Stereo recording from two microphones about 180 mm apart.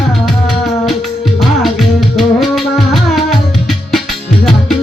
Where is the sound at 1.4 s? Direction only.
Centre (ahead or behind).